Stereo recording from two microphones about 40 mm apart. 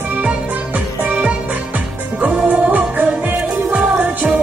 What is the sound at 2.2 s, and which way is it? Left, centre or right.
Music, right.